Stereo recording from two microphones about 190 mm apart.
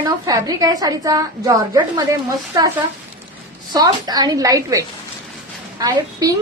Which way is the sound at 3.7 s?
20° right (ahead or behind).